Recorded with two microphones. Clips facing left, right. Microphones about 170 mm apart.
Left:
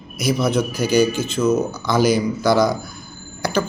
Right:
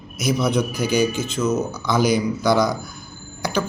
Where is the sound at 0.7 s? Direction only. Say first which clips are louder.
Left 3 dB; 45° left (ahead or behind).